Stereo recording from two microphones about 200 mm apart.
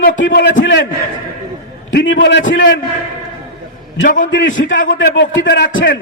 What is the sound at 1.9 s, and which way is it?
Speech, 65° left (ahead or behind).